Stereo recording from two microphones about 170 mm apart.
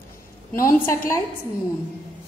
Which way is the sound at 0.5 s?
15° left (ahead or behind).